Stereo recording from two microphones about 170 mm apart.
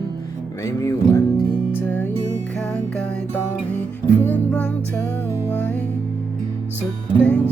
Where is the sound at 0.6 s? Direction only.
20° left (ahead or behind).